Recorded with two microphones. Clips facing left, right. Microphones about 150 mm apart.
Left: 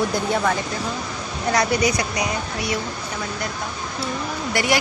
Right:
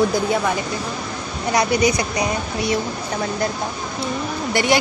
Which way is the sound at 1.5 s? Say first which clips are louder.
Right 2 dB; 20° right (ahead or behind).